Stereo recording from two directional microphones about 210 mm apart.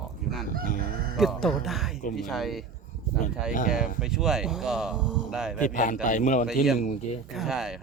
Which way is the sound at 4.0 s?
5° right (ahead or behind).